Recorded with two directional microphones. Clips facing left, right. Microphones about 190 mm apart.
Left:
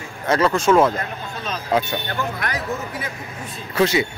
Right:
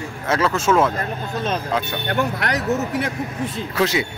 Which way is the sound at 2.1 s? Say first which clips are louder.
Right 4 dB; 75° right (ahead or behind).